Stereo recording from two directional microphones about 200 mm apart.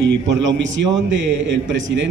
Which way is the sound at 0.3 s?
65° right (ahead or behind).